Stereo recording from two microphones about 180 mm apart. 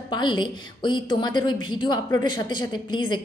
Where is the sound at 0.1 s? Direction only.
25° left (ahead or behind).